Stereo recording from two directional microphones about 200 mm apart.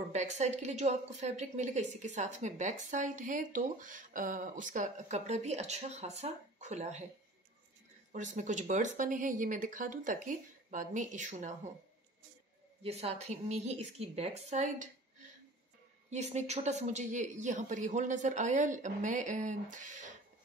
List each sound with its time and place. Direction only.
0.1 s a woman's voice: 35° right (ahead or behind)
8.1 s a woman's voice: 40° right (ahead or behind)
12.8 s a woman's voice: 30° right (ahead or behind)
16.1 s a woman's voice: 35° right (ahead or behind)